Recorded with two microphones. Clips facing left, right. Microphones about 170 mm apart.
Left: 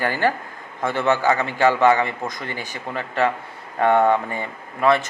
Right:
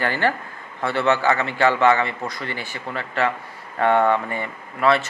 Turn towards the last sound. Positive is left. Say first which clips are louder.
# left 1 dB
turn(degrees=15)  # may be behind; listen again after turning